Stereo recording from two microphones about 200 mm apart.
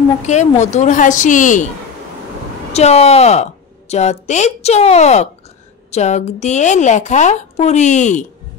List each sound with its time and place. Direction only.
0.3 s speech: 35° left (ahead or behind)
2.7 s speech: 30° left (ahead or behind)